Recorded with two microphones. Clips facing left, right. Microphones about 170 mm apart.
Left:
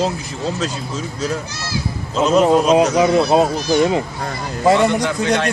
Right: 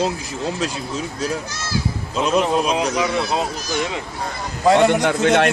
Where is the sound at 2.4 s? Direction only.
30° left (ahead or behind).